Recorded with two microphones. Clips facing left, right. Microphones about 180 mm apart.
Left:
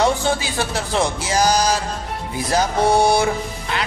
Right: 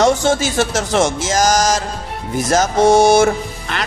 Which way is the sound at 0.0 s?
85° right.